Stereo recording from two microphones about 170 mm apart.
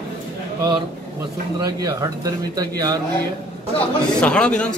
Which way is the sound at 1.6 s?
20° right (ahead or behind).